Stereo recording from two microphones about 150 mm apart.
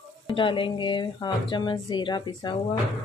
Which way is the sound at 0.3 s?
35° left (ahead or behind).